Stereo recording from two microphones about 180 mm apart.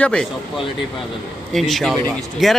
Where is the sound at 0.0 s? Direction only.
5° left (ahead or behind).